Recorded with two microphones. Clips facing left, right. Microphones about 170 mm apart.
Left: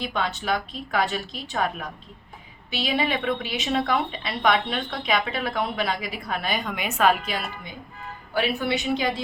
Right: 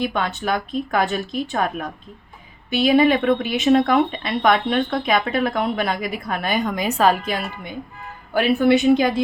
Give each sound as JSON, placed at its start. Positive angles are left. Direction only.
{"t": 0.0, "sound": "speech", "side_deg": -50}
{"t": 8.3, "sound": "speech", "side_deg": -50}